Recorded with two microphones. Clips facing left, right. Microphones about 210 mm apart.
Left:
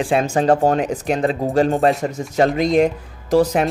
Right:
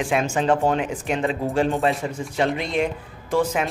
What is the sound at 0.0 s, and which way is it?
Speech, 35° left (ahead or behind).